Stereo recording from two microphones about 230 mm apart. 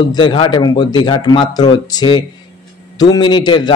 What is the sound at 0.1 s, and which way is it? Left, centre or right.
A man's voice, centre.